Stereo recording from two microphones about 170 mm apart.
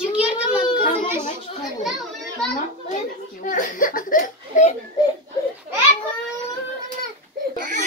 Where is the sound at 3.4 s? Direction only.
50° left (ahead or behind).